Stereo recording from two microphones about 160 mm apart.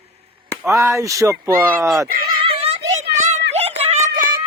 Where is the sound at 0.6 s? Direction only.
20° right (ahead or behind).